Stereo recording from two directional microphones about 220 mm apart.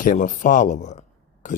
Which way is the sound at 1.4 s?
35° left (ahead or behind).